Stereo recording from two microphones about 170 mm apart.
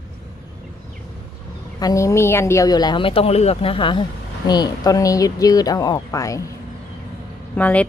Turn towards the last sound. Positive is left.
turn(degrees=10)  # may be behind; listen again after turning